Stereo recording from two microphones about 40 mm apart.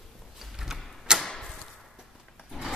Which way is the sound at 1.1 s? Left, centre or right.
Centre.